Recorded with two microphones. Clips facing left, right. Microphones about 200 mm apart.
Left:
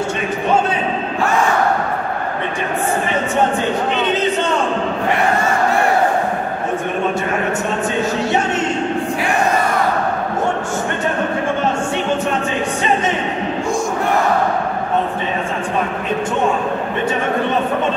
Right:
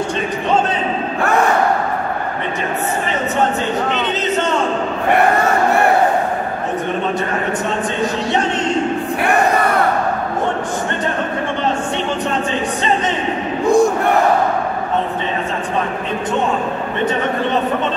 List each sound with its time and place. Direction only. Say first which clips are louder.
9.2 s crowd: right 4 dB; 60° right (ahead or behind)
13.7 s crowd: right 11 dB; 60° right (ahead or behind)